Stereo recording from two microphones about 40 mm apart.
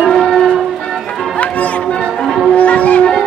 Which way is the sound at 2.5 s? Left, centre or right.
Left.